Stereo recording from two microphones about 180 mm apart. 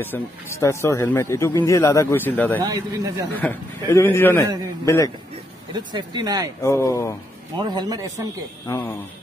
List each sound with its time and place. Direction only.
0.0 s speech: 10° left (ahead or behind)
2.6 s speech: 20° right (ahead or behind)
3.3 s speech: 10° left (ahead or behind)
5.7 s speech: 25° right (ahead or behind)
6.6 s speech: 15° left (ahead or behind)
7.5 s speech: 25° right (ahead or behind)
8.6 s speech: 15° left (ahead or behind)